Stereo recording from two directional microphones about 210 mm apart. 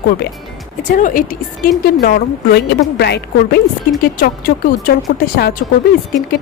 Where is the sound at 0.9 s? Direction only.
40° left (ahead or behind).